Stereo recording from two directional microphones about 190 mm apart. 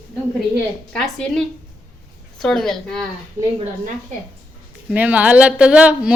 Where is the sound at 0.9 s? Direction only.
Centre (ahead or behind).